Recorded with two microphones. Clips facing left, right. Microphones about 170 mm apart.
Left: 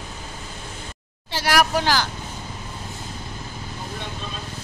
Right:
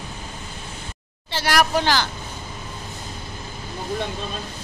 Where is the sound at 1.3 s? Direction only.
10° left (ahead or behind).